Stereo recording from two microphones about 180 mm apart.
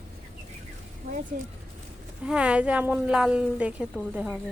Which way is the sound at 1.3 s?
50° right (ahead or behind).